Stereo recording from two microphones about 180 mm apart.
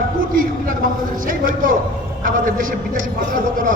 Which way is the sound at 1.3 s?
50° right (ahead or behind).